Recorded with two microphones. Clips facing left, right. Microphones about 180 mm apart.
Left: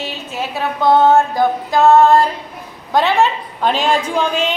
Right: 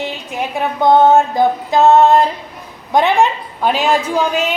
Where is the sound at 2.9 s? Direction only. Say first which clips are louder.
Right 1 dB; 15° right (ahead or behind).